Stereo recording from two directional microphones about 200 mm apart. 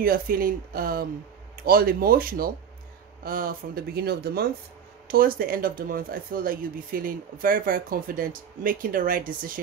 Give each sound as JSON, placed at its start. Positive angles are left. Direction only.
{"t": 0.0, "sound": "speech", "side_deg": -45}